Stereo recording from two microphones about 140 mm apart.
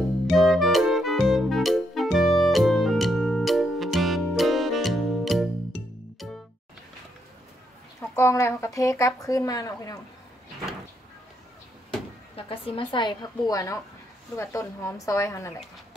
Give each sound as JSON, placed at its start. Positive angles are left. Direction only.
{"t": 0.3, "sound": "music", "side_deg": 0}
{"t": 8.2, "sound": "a woman's voice", "side_deg": 20}
{"t": 12.4, "sound": "a woman's voice", "side_deg": 40}